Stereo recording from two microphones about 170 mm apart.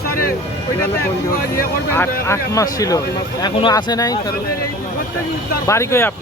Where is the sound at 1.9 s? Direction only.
15° left (ahead or behind).